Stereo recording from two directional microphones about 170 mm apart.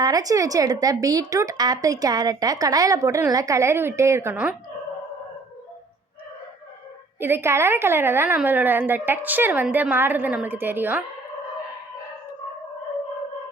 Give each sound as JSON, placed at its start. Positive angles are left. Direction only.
{"t": 0.0, "sound": "speech", "side_deg": -20}
{"t": 7.2, "sound": "a woman's voice", "side_deg": -15}